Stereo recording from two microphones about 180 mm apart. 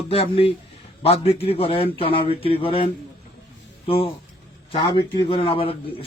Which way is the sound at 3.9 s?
30° left (ahead or behind).